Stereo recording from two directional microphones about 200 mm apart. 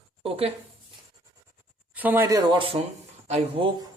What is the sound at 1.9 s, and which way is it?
Speech, 10° right (ahead or behind).